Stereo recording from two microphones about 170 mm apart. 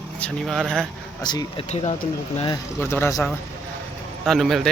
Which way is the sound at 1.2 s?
25° left (ahead or behind).